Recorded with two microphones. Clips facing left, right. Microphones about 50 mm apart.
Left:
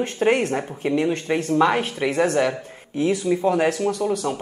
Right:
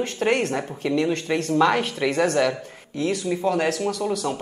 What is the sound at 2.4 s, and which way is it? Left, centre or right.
A man's voice, left.